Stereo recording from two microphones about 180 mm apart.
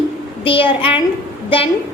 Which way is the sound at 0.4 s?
30° left (ahead or behind).